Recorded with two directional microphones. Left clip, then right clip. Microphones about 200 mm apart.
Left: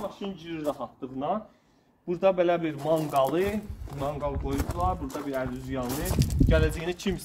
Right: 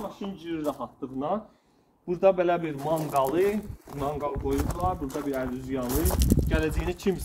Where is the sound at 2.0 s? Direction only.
15° left (ahead or behind).